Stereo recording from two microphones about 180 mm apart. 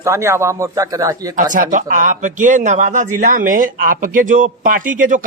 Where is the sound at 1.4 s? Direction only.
50° right (ahead or behind).